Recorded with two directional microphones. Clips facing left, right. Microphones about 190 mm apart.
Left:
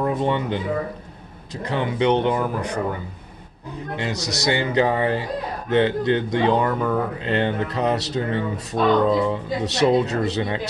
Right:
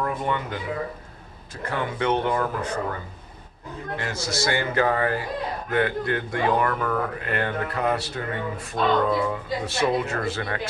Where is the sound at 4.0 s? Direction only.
15° left (ahead or behind).